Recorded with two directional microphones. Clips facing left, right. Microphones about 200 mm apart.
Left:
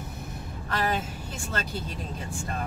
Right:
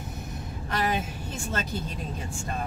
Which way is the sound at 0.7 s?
20° right (ahead or behind).